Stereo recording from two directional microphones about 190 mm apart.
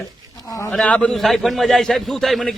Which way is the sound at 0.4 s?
20° left (ahead or behind).